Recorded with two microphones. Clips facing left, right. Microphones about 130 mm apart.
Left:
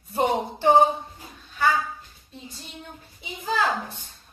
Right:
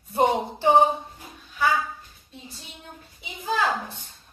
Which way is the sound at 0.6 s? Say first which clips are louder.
Left 1 dB; 20° right (ahead or behind).